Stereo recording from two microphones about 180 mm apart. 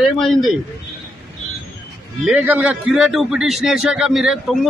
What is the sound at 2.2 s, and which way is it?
A man's voice, 5° right (ahead or behind).